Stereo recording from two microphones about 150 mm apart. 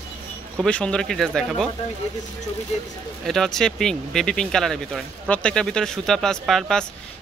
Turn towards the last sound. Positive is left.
turn(degrees=5)  # may be behind; listen again after turning